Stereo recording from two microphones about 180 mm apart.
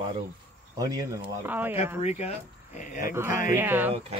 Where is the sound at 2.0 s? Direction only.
40° left (ahead or behind).